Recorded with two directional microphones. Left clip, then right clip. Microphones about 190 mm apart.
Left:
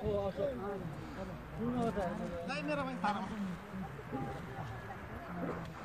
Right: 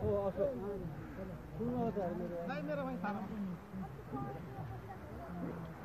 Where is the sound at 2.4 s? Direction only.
45° right (ahead or behind).